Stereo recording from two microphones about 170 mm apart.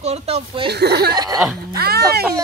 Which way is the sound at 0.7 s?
75° right (ahead or behind).